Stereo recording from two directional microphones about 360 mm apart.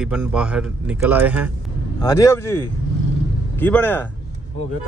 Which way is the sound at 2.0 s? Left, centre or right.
Centre.